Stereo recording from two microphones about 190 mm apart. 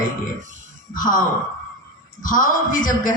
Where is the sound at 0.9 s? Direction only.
45° left (ahead or behind).